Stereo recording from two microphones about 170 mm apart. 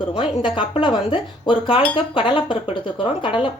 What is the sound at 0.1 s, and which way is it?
Speech, 30° left (ahead or behind).